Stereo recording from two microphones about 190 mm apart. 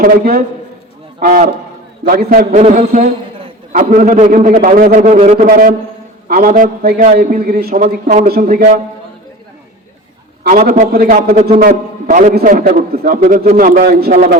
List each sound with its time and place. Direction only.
0.0 s a man's voice: 50° right (ahead or behind)
8.0 s a man's voice: 35° right (ahead or behind)
8.3 s a man's voice: 50° right (ahead or behind)
10.4 s a man's voice: 50° right (ahead or behind)